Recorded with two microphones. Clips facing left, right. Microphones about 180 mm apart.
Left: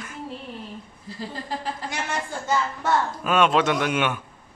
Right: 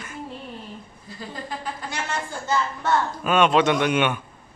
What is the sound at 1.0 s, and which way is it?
Speech, 30° left (ahead or behind).